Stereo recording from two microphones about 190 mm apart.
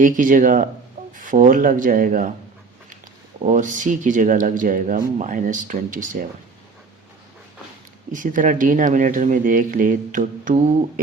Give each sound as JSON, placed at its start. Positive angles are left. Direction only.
{"t": 0.0, "sound": "speech", "side_deg": -45}
{"t": 3.4, "sound": "speech", "side_deg": -40}
{"t": 8.1, "sound": "speech", "side_deg": -45}